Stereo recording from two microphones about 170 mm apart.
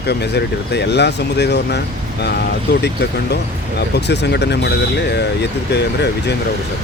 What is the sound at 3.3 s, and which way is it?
Speech, 75° left (ahead or behind).